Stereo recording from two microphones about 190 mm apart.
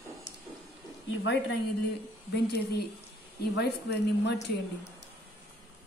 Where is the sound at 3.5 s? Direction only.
60° left (ahead or behind).